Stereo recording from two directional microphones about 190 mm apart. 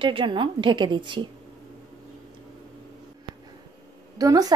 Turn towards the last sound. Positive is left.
turn(degrees=-20)  # may be behind; listen again after turning